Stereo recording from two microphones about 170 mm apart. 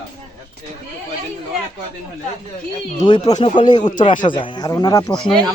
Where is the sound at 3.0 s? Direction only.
25° left (ahead or behind).